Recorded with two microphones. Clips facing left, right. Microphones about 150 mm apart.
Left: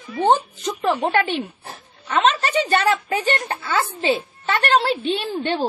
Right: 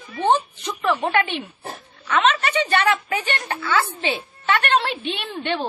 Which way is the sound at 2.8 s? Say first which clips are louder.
Left 2 dB; 35° left (ahead or behind).